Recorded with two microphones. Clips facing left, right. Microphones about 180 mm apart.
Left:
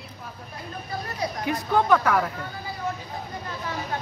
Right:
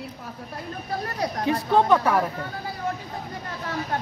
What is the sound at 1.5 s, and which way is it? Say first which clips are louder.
Speech: right 2 dB; 25° right (ahead or behind).